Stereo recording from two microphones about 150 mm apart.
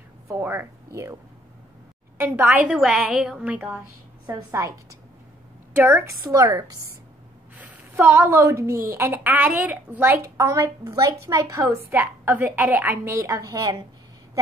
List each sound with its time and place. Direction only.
0.3 s a woman's voice: 15° right (ahead or behind)
2.1 s a woman's voice: 15° right (ahead or behind)
4.3 s a woman's voice: 20° right (ahead or behind)
5.9 s a woman's voice: 20° right (ahead or behind)